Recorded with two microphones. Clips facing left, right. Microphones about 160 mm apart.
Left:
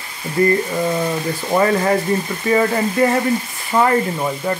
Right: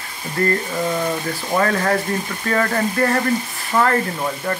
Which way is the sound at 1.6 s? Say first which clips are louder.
Left 3 dB; 10° left (ahead or behind).